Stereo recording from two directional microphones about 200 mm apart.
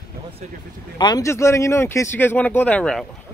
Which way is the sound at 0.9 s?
20° left (ahead or behind).